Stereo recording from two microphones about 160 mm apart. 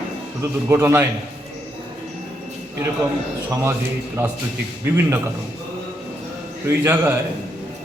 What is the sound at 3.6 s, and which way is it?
Speech, 15° right (ahead or behind).